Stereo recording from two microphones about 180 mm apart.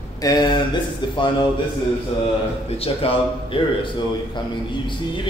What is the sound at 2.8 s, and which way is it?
Speech, 30° left (ahead or behind).